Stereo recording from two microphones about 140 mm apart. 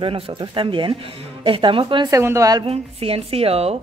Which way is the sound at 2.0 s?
20° right (ahead or behind).